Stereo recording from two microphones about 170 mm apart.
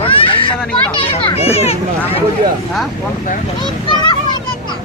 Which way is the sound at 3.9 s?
25° left (ahead or behind).